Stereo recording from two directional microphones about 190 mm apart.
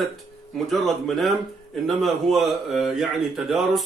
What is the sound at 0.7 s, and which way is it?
Speech, centre (ahead or behind).